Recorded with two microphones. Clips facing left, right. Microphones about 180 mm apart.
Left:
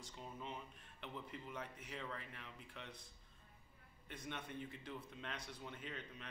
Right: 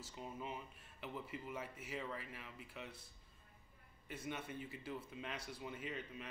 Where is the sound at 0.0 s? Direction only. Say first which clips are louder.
Right 3 dB; 5° right (ahead or behind).